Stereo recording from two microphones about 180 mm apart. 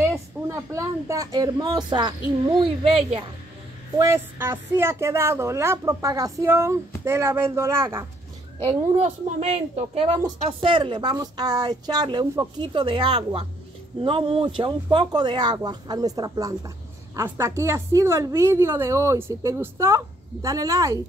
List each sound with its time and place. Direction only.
0.5 s speech: 15° right (ahead or behind); by 3.3 s 35° right (ahead or behind)
3.9 s speech: 15° right (ahead or behind)
8.9 s speech: 35° right (ahead or behind); by 21.0 s 20° right (ahead or behind)